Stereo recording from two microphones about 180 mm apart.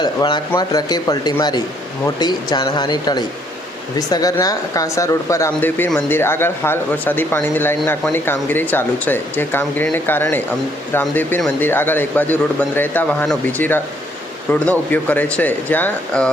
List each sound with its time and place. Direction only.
0.0 s speech: 25° left (ahead or behind); by 16.3 s 10° left (ahead or behind)